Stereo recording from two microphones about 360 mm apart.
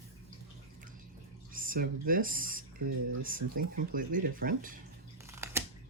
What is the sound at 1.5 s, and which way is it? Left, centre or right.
Speech, right.